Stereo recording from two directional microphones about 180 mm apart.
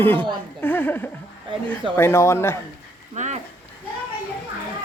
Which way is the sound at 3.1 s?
40° right (ahead or behind).